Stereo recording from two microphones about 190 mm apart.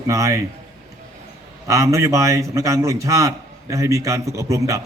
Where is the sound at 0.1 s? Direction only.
15° right (ahead or behind).